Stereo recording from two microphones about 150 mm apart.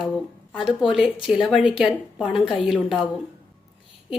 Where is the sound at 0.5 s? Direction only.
Centre (ahead or behind).